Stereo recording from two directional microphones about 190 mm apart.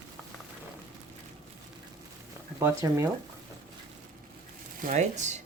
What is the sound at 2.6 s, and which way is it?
Speech, 15° right (ahead or behind).